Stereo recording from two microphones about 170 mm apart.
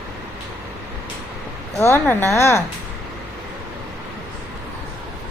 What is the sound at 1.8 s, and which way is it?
Speech, 15° left (ahead or behind).